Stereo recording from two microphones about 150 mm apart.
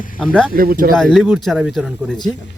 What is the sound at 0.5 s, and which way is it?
Speech, 75° right (ahead or behind).